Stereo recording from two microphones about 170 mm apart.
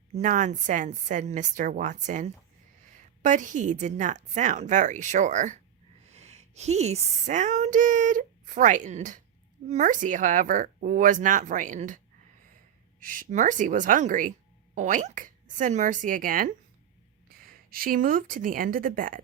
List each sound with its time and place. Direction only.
0.1 s a woman's voice: 50° right (ahead or behind)
13.0 s a woman's voice: 50° right (ahead or behind)